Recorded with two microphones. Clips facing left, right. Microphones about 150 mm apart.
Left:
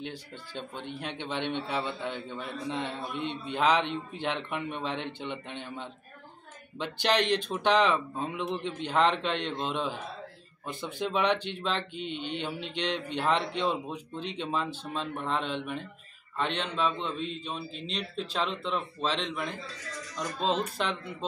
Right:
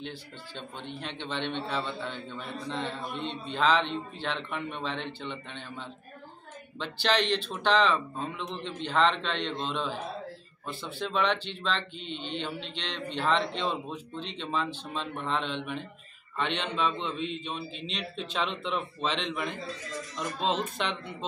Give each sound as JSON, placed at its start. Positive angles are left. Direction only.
{"t": 0.0, "sound": "a man's voice", "side_deg": 10}
{"t": 17.7, "sound": "speech", "side_deg": 40}
{"t": 18.3, "sound": "a man's voice", "side_deg": 0}
{"t": 20.7, "sound": "a man's voice", "side_deg": 5}